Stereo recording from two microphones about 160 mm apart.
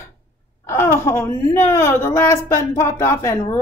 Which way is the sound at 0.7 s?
15° left (ahead or behind).